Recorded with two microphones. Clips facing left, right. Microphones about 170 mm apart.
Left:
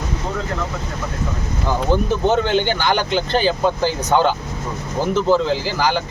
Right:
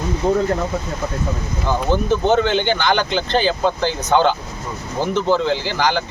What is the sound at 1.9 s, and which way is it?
Speech, 5° left (ahead or behind).